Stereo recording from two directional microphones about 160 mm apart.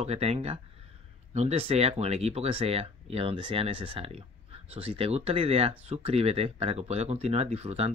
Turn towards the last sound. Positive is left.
turn(degrees=-40)  # may be behind; listen again after turning